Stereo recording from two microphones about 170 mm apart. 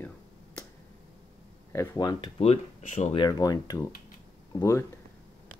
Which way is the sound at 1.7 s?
15° left (ahead or behind).